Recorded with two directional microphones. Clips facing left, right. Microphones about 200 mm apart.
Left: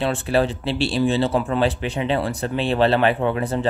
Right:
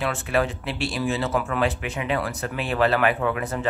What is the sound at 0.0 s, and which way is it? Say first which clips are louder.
Speech: left 4 dB; 30° left (ahead or behind).